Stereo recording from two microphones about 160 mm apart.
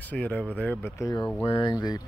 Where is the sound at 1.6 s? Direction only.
25° left (ahead or behind).